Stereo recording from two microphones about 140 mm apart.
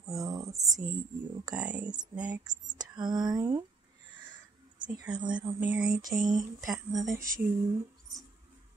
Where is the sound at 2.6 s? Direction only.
30° right (ahead or behind).